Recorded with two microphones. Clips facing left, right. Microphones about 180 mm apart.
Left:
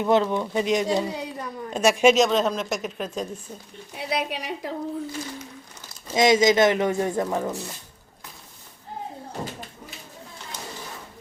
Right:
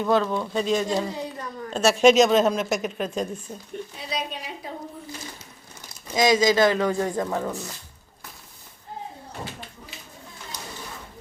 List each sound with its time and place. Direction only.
0.0 s a woman's voice: 20° left (ahead or behind)
2.1 s speech: 5° right (ahead or behind)
3.9 s a woman's voice: 65° left (ahead or behind)
6.1 s a woman's voice: 25° left (ahead or behind)
9.4 s a sound: 45° left (ahead or behind)